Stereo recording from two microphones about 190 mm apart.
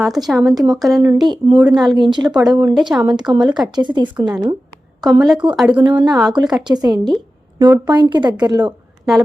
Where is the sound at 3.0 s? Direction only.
20° right (ahead or behind).